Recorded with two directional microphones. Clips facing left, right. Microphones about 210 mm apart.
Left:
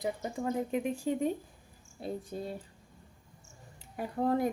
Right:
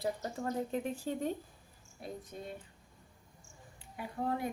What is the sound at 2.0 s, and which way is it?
Speech, 30° left (ahead or behind).